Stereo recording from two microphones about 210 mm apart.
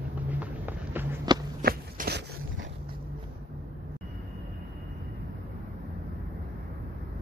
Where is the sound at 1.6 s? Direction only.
50° right (ahead or behind).